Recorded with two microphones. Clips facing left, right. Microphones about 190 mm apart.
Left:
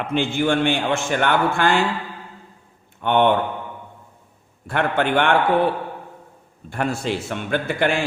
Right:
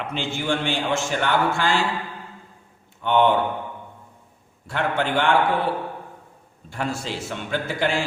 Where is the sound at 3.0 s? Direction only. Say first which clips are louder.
Left 1 dB; 60° left (ahead or behind).